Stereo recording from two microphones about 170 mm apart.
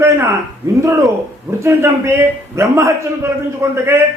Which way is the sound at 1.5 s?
15° right (ahead or behind).